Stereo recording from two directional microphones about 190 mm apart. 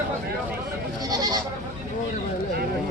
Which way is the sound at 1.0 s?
20° right (ahead or behind).